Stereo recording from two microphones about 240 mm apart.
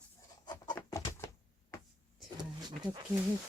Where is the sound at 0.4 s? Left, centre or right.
Centre.